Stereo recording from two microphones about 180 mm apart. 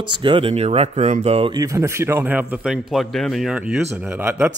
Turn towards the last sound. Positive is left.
turn(degrees=-10)  # may be behind; listen again after turning